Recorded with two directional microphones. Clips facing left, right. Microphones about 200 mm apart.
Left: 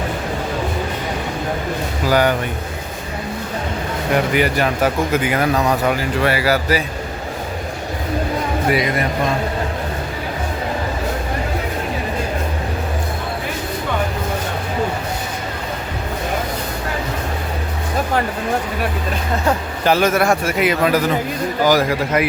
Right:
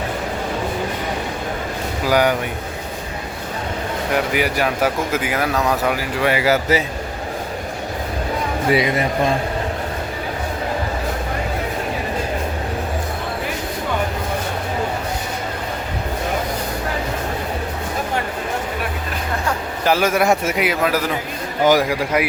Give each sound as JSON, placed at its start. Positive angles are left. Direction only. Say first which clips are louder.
{"t": 2.0, "sound": "speech", "louder": "left 1 dB", "side_deg": -10}
{"t": 4.3, "sound": "speech", "louder": "left 2 dB", "side_deg": -5}
{"t": 8.7, "sound": "a man's voice", "louder": "right 3 dB", "side_deg": -25}
{"t": 19.8, "sound": "speech", "louder": "left 1 dB", "side_deg": -5}
{"t": 20.6, "sound": "speech", "louder": "left 3 dB", "side_deg": -10}
{"t": 21.6, "sound": "a man's voice", "louder": "right 1 dB", "side_deg": -20}
{"t": 21.8, "sound": "speech", "louder": "left 1 dB", "side_deg": -10}